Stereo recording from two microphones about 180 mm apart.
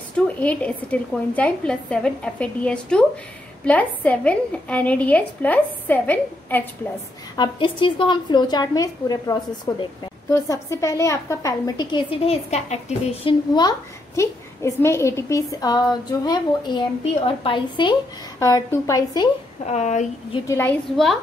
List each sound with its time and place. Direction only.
0.4 s a woman's voice: 5° left (ahead or behind)
7.3 s a woman's voice: 25° left (ahead or behind)
19.6 s speech: 40° left (ahead or behind)
20.4 s a woman's voice: 15° left (ahead or behind)
20.9 s a woman's voice: centre (ahead or behind)